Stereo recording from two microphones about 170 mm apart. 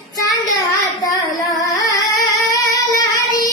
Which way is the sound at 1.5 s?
20° left (ahead or behind).